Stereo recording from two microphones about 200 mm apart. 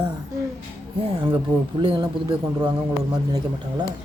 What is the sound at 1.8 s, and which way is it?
Child singing, 25° right (ahead or behind).